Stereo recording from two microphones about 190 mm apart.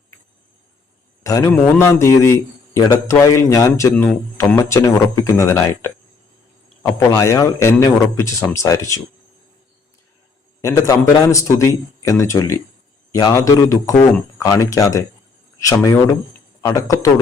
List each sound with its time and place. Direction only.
1.2 s a man's voice: 15° left (ahead or behind)
10.6 s a man's voice: 15° left (ahead or behind)